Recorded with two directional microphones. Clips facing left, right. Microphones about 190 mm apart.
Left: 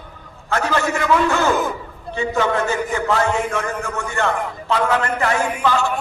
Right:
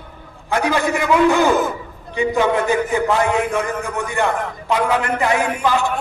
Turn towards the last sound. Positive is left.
turn(degrees=-15)  # may be behind; listen again after turning